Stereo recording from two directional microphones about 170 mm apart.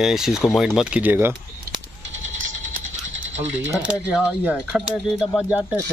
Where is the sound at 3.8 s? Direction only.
5° right (ahead or behind).